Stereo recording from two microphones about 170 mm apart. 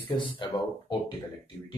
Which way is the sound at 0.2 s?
30° left (ahead or behind).